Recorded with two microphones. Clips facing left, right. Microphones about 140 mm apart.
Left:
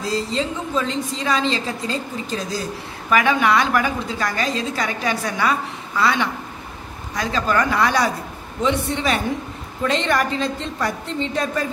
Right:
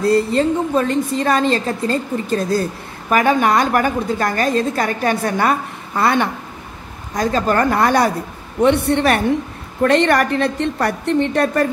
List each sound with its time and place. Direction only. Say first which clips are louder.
0.0 s a woman's voice: right 8 dB; 55° right (ahead or behind)
8.5 s a woman's voice: right 7 dB; 65° right (ahead or behind)